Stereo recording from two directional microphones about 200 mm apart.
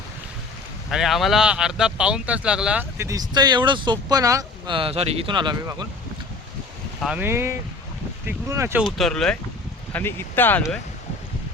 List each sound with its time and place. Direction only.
0.9 s speech: centre (ahead or behind); by 5.8 s 20° right (ahead or behind)
7.0 s speech: 5° right (ahead or behind)
8.8 s speech: centre (ahead or behind)